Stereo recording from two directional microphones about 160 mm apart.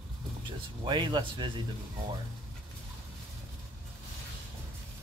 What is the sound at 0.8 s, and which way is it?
Speech, 30° right (ahead or behind).